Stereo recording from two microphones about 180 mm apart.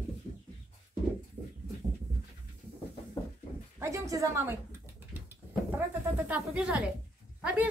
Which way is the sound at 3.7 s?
15° right (ahead or behind).